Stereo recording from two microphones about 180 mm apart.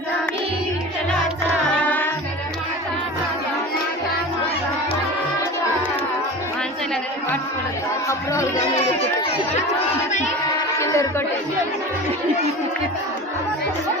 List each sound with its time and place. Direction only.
1.8 s music: 10° left (ahead or behind)
8.0 s speech: 15° left (ahead or behind)
10.8 s a sound: 15° left (ahead or behind)